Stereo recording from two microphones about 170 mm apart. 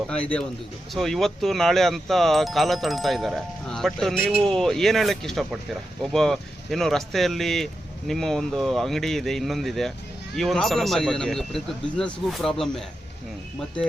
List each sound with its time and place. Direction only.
0.1 s speech: 5° left (ahead or behind)